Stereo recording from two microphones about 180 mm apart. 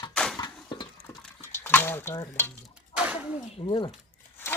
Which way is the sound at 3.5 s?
30° left (ahead or behind).